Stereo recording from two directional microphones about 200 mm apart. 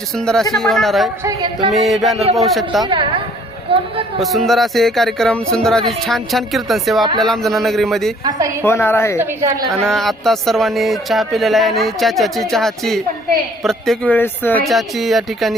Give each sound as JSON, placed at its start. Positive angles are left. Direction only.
{"t": 0.2, "sound": "speech", "side_deg": 5}
{"t": 1.2, "sound": "a sound", "side_deg": -20}
{"t": 1.9, "sound": "speech", "side_deg": 0}
{"t": 2.8, "sound": "a sound", "side_deg": -25}
{"t": 4.2, "sound": "speech", "side_deg": 0}
{"t": 8.2, "sound": "a woman's voice", "side_deg": -20}
{"t": 8.6, "sound": "a woman's voice", "side_deg": 10}
{"t": 9.1, "sound": "a woman's voice", "side_deg": -10}
{"t": 9.8, "sound": "speech", "side_deg": 0}